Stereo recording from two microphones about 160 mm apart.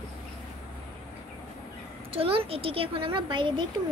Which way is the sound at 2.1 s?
35° right (ahead or behind).